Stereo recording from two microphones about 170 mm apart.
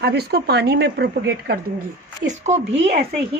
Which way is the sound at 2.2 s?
40° right (ahead or behind).